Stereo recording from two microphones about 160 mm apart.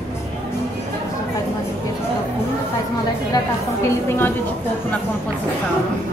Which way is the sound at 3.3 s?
15° left (ahead or behind).